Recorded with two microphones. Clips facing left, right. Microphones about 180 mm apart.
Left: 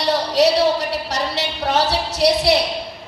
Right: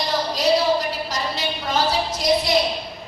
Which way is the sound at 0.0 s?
75° left (ahead or behind).